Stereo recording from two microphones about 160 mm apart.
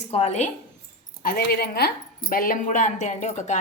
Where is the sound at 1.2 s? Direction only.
65° left (ahead or behind).